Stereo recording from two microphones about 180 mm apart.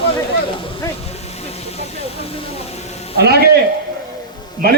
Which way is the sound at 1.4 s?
35° left (ahead or behind).